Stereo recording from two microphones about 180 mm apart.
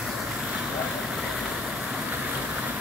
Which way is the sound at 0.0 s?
5° right (ahead or behind).